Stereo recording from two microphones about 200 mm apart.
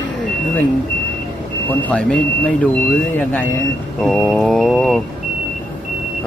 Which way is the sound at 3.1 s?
10° left (ahead or behind).